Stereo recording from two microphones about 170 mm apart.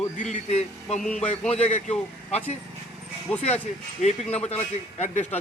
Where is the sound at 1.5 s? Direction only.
40° left (ahead or behind).